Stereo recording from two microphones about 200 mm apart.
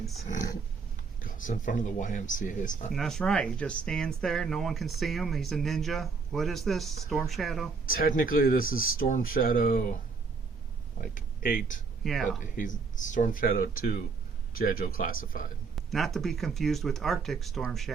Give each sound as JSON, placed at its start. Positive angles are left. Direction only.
{"t": 0.3, "sound": "roaring cats", "side_deg": 40}
{"t": 1.2, "sound": "speech", "side_deg": 40}
{"t": 2.9, "sound": "speech", "side_deg": 0}
{"t": 7.9, "sound": "speech", "side_deg": 45}
{"t": 11.1, "sound": "speech", "side_deg": 45}
{"t": 12.0, "sound": "speech", "side_deg": 0}
{"t": 12.5, "sound": "speech", "side_deg": 40}
{"t": 15.9, "sound": "speech", "side_deg": 0}